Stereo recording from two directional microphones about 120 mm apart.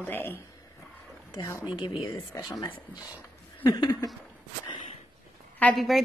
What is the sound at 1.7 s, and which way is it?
Speech, 40° left (ahead or behind).